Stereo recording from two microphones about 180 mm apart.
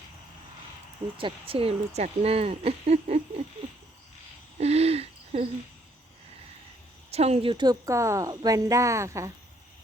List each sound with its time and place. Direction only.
1.2 s speech: 30° right (ahead or behind)
4.6 s hoot: 35° right (ahead or behind)
7.1 s speech: 35° right (ahead or behind); by 9.3 s 15° right (ahead or behind)